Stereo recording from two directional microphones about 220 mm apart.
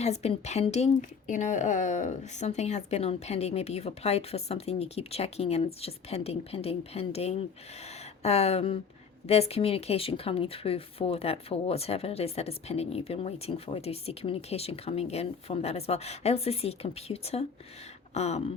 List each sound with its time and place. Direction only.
0.0 s speech: 30° left (ahead or behind)